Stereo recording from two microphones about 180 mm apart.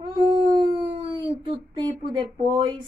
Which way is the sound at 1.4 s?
25° right (ahead or behind).